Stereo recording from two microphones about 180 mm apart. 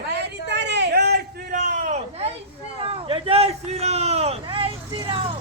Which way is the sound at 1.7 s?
40° right (ahead or behind).